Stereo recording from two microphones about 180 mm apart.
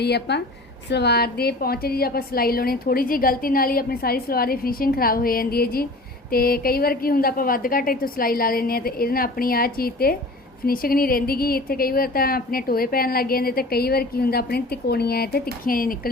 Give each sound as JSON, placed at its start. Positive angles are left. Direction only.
{"t": 0.0, "sound": "a woman's voice", "side_deg": 65}